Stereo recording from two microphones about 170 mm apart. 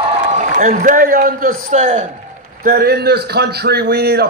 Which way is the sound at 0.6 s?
50° right (ahead or behind).